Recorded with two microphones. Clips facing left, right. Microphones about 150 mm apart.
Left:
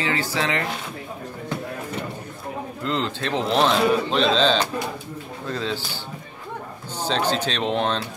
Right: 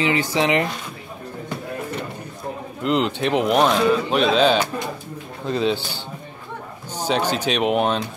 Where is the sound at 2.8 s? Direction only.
15° right (ahead or behind).